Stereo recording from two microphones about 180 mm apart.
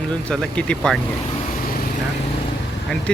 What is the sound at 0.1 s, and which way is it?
Speech, 5° left (ahead or behind).